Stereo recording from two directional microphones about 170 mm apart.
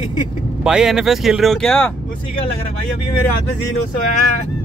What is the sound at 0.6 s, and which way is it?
Speech, 5° right (ahead or behind).